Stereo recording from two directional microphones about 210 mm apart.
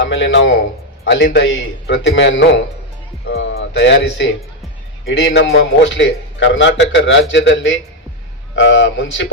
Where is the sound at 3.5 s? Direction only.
55° left (ahead or behind).